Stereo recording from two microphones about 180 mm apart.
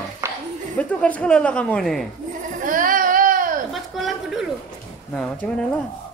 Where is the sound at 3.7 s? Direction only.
Centre (ahead or behind).